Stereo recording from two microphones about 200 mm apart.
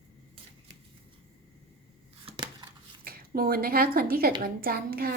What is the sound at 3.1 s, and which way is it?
A child's voice, 45° right (ahead or behind).